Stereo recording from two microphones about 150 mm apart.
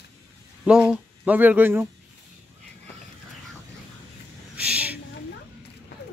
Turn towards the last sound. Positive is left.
turn(degrees=-10)  # may be behind; listen again after turning